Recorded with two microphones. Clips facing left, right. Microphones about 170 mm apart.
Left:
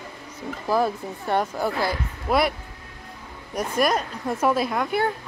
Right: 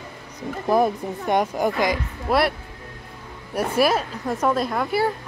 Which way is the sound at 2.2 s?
Centre (ahead or behind).